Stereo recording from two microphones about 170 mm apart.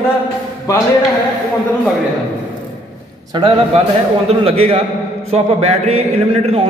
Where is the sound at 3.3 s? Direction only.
30° right (ahead or behind).